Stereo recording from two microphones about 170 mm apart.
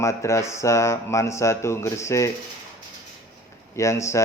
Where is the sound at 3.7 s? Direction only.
15° left (ahead or behind).